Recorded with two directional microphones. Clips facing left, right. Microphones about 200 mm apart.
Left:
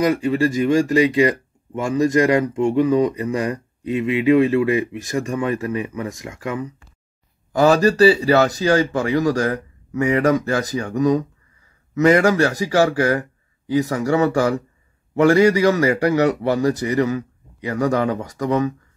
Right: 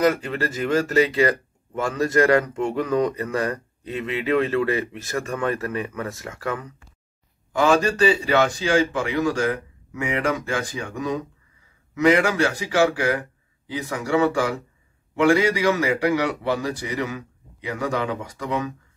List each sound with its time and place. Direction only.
0.0 s speech: 10° left (ahead or behind)
7.5 s speech: 40° left (ahead or behind)